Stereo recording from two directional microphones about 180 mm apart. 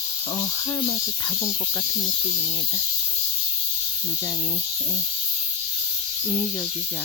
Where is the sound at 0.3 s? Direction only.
25° left (ahead or behind).